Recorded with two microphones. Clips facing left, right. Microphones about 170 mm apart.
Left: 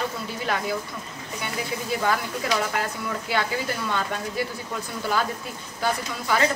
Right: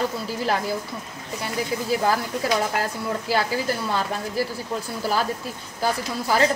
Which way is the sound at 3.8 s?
35° right (ahead or behind).